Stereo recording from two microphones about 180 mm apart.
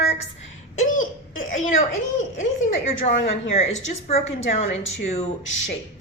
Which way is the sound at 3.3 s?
40° left (ahead or behind).